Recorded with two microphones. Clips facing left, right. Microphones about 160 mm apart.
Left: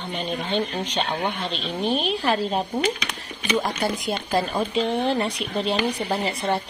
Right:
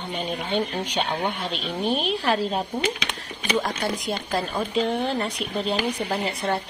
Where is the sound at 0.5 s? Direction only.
10° right (ahead or behind).